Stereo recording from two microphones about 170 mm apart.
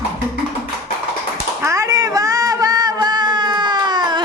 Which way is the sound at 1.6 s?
20° right (ahead or behind).